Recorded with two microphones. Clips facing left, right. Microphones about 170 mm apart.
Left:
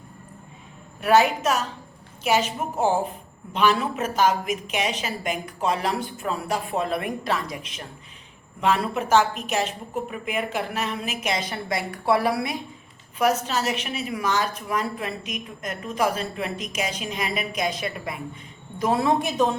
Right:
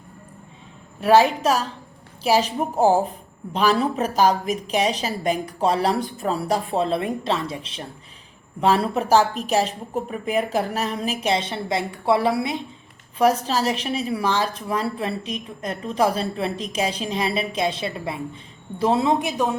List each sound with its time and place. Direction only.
1.0 s a woman's voice: 30° right (ahead or behind); by 19.5 s 15° right (ahead or behind)